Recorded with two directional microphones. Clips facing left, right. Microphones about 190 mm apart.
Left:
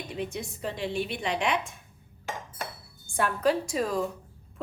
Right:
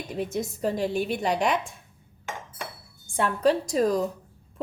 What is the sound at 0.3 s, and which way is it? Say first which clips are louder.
A woman's voice: right 7 dB; 40° right (ahead or behind).